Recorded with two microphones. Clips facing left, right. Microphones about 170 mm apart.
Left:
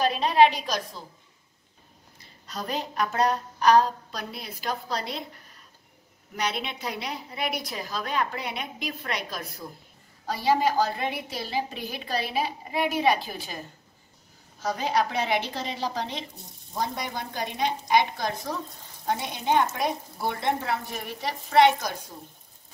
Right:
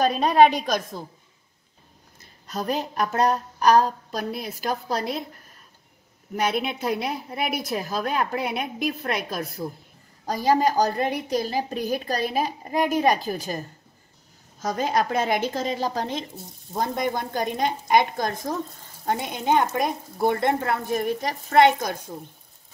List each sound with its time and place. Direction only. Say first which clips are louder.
0.0 s a woman's voice: right 3 dB; 45° right (ahead or behind)
2.1 s a woman's voice: right 6 dB; 45° right (ahead or behind)
6.3 s a woman's voice: right 6 dB; 50° right (ahead or behind)
14.6 s a woman's voice: right 2 dB; 45° right (ahead or behind)